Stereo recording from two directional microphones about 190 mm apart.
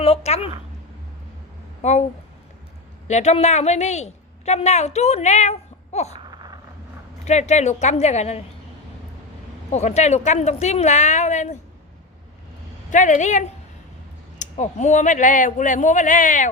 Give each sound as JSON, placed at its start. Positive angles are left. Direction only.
{"t": 0.0, "sound": "a woman's voice", "side_deg": 35}
{"t": 1.8, "sound": "a woman's voice", "side_deg": 35}
{"t": 3.1, "sound": "a woman's voice", "side_deg": 35}
{"t": 6.1, "sound": "a sound", "side_deg": -25}
{"t": 7.3, "sound": "a woman's voice", "side_deg": 35}
{"t": 9.7, "sound": "a woman's voice", "side_deg": 35}
{"t": 12.9, "sound": "a woman's voice", "side_deg": 40}